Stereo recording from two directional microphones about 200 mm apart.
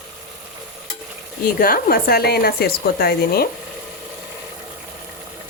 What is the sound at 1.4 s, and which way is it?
Speech, 45° left (ahead or behind).